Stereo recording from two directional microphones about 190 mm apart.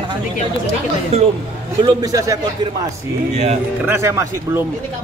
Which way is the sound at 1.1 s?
35° right (ahead or behind).